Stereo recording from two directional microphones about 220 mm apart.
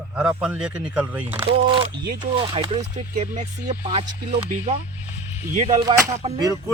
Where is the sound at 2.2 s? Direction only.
20° right (ahead or behind).